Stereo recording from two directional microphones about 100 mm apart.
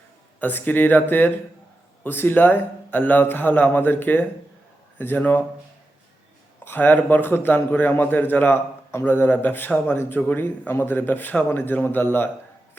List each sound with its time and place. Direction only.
0.3 s a man's voice: 20° left (ahead or behind)
6.7 s a man's voice: 20° left (ahead or behind)